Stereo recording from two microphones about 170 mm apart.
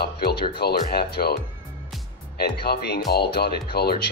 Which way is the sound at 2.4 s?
70° left (ahead or behind).